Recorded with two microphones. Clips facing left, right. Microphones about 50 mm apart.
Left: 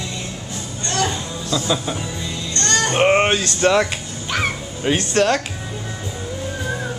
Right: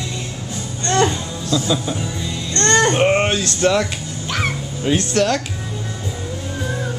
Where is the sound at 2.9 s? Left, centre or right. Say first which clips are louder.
Left 1 dB; centre.